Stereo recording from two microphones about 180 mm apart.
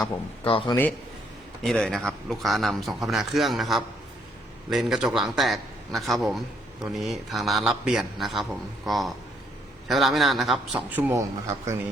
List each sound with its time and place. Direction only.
0.0 s speech: 30° left (ahead or behind)
1.6 s a man's voice: 5° left (ahead or behind); by 11.7 s 15° right (ahead or behind)